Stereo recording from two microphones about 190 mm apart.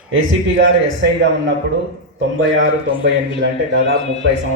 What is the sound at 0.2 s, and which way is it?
Speech, 90° right.